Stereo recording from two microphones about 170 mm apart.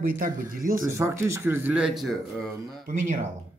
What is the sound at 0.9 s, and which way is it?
Speech, 15° right (ahead or behind).